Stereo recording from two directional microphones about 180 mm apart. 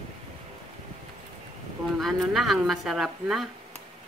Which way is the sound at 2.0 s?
Centre (ahead or behind).